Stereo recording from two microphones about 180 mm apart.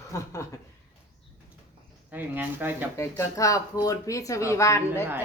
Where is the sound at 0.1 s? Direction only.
15° left (ahead or behind).